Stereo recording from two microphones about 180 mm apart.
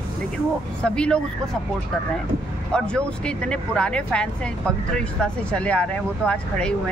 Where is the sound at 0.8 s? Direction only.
5° left (ahead or behind).